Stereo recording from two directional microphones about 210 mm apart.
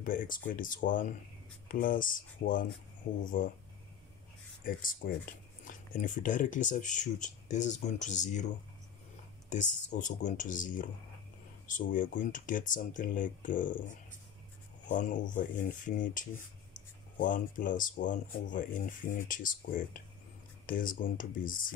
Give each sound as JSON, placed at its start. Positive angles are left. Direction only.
{"t": 0.0, "sound": "speech", "side_deg": 40}
{"t": 4.6, "sound": "speech", "side_deg": 40}
{"t": 9.5, "sound": "speech", "side_deg": 35}